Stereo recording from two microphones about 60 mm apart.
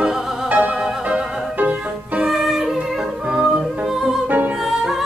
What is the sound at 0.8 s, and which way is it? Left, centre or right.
Music, centre.